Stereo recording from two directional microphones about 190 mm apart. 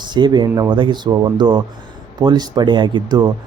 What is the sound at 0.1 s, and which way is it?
Speech, 25° right (ahead or behind).